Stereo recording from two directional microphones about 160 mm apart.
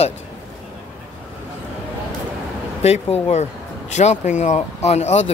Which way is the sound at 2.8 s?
40° left (ahead or behind).